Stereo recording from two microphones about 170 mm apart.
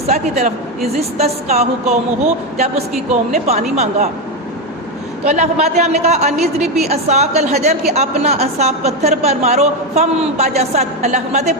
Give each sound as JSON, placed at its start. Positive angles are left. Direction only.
{"t": 0.1, "sound": "a woman's voice", "side_deg": -40}
{"t": 3.4, "sound": "a woman's voice", "side_deg": -40}
{"t": 5.2, "sound": "a woman's voice", "side_deg": -40}